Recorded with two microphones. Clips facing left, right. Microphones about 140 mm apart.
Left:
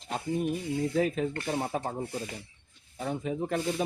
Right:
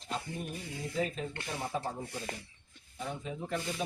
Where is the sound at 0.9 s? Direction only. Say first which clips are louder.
Left 4 dB; 65° left (ahead or behind).